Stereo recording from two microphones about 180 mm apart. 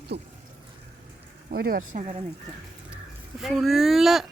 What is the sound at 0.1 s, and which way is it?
Speech, 70° right (ahead or behind).